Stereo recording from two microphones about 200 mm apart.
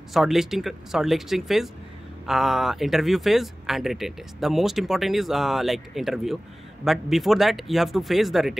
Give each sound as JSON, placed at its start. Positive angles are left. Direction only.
{"t": 0.1, "sound": "speech", "side_deg": 0}